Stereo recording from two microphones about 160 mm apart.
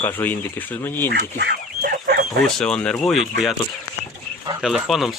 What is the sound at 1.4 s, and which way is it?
Chicken, 85° right.